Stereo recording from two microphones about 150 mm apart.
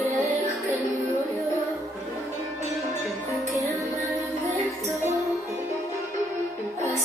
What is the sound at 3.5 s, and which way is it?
Music, 20° right (ahead or behind).